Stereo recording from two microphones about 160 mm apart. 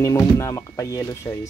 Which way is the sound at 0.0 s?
20° left (ahead or behind).